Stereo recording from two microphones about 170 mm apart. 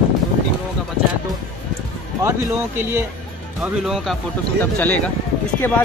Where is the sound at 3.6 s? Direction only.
5° right (ahead or behind).